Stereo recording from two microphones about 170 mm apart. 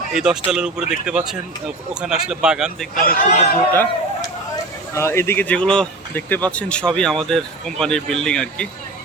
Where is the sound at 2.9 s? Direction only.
50° left (ahead or behind).